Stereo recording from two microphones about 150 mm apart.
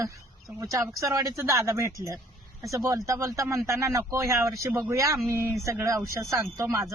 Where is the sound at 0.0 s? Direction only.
20° right (ahead or behind).